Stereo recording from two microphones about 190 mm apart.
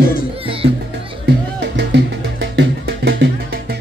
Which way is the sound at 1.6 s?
60° right (ahead or behind).